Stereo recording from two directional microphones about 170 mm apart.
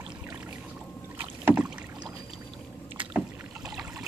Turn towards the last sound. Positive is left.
turn(degrees=-5)  # may be behind; listen again after turning